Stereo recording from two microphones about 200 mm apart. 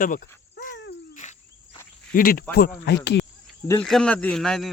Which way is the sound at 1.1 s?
35° left (ahead or behind).